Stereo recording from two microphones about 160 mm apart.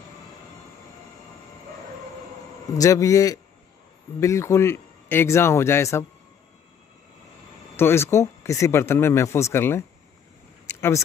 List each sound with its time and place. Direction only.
2.8 s a man's voice: 20° left (ahead or behind)
7.7 s speech: 15° left (ahead or behind)